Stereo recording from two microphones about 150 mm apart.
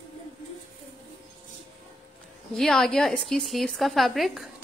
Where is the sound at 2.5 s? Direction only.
Centre (ahead or behind).